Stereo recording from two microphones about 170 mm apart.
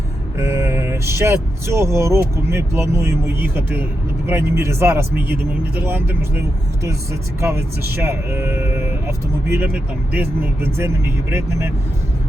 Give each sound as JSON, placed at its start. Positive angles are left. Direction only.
{"t": 0.3, "sound": "speech", "side_deg": -15}